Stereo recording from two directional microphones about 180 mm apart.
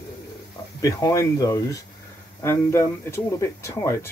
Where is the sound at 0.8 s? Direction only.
15° left (ahead or behind).